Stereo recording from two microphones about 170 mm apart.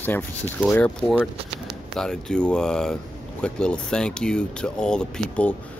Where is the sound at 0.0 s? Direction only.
10° left (ahead or behind).